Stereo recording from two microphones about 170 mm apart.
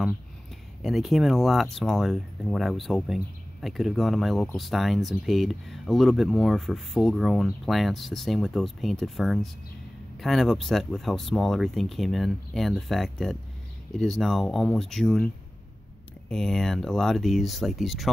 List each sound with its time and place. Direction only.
0.8 s speech: centre (ahead or behind)
16.3 s speech: 5° left (ahead or behind)